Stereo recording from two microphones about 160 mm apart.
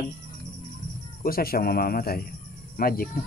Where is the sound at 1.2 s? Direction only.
70° left (ahead or behind).